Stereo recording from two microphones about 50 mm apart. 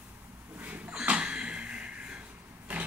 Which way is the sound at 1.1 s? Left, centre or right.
Right.